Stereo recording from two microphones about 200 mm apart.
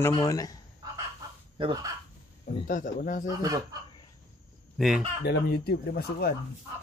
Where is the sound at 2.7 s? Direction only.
40° left (ahead or behind).